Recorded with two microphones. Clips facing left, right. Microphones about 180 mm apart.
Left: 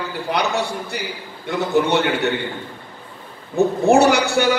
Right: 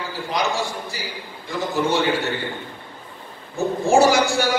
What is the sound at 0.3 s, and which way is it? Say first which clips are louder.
A man's voice: left 2 dB; 65° left (ahead or behind).